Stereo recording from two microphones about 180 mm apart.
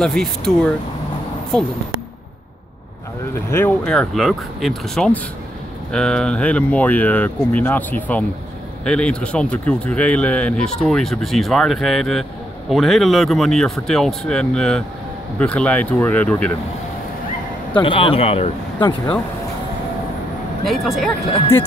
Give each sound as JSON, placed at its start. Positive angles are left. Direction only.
{"t": 0.0, "sound": "speech", "side_deg": 5}
{"t": 3.4, "sound": "speech", "side_deg": 10}
{"t": 17.8, "sound": "speech", "side_deg": 30}
{"t": 20.6, "sound": "speech", "side_deg": 0}